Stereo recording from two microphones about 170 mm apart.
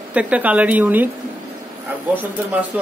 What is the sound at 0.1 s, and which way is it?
A woman's voice, 10° right (ahead or behind).